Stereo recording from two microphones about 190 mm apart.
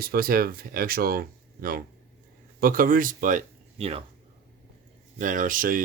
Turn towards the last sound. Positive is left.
turn(degrees=-45)  # may be behind; listen again after turning